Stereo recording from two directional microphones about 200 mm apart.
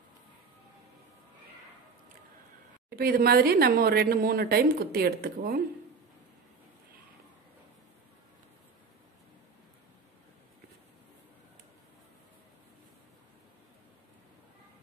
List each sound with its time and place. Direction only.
3.0 s a woman's voice: 50° right (ahead or behind)